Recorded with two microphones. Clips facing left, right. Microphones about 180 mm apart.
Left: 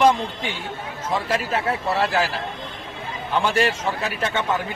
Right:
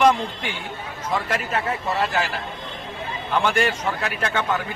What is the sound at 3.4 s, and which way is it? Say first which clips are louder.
A man's voice: left 1 dB; 30° left (ahead or behind).